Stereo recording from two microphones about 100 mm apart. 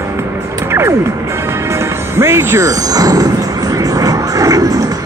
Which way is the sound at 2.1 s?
25° right (ahead or behind).